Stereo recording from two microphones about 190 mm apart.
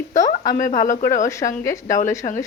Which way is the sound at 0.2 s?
20° left (ahead or behind).